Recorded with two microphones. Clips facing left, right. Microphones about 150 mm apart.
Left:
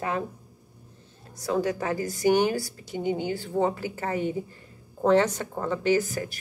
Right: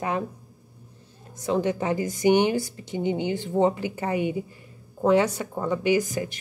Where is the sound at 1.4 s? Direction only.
20° right (ahead or behind).